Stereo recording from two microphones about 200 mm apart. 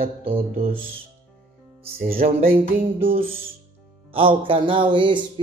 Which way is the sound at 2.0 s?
45° right (ahead or behind).